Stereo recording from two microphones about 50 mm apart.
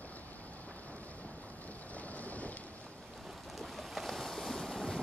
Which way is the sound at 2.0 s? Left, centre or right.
Left.